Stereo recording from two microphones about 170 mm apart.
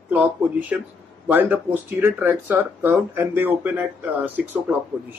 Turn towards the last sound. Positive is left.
turn(degrees=-10)  # may be behind; listen again after turning